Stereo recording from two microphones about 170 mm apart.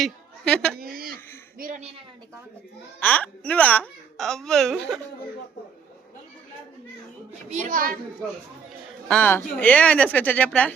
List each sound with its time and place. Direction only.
0.0 s a sound: 5° left (ahead or behind)
0.8 s a sound: 60° right (ahead or behind)
1.5 s a woman's voice: 55° right (ahead or behind)
3.0 s speech: 10° left (ahead or behind)
7.5 s a woman's voice: 50° right (ahead or behind)
9.0 s speech: 10° left (ahead or behind)